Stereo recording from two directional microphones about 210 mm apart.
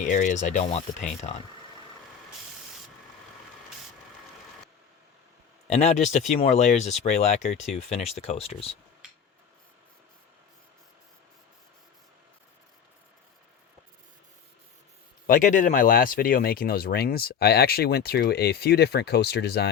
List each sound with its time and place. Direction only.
0.0 s speech: 35° left (ahead or behind)
5.6 s speech: 30° left (ahead or behind)
15.3 s speech: 40° left (ahead or behind)